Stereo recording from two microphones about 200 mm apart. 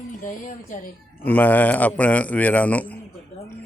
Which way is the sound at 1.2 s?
10° left (ahead or behind).